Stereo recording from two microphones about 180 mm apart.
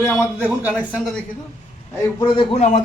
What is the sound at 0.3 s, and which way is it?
Speech, 10° right (ahead or behind).